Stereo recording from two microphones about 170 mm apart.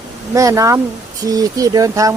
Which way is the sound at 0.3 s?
20° right (ahead or behind).